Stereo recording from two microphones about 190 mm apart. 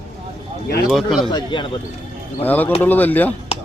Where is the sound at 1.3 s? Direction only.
25° left (ahead or behind).